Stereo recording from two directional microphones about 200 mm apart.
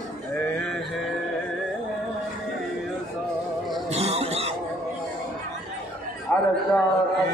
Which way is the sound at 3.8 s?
30° right (ahead or behind).